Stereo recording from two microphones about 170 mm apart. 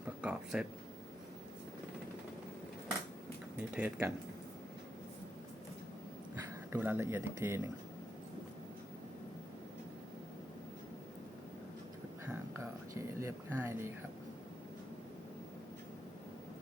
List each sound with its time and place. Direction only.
0.2 s speech: 5° right (ahead or behind)
3.6 s speech: 10° right (ahead or behind)
6.7 s speech: 10° right (ahead or behind)
12.3 s a sound: 15° right (ahead or behind)